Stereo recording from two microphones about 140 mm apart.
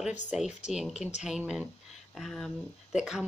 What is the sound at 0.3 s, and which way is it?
Speech, 5° right (ahead or behind).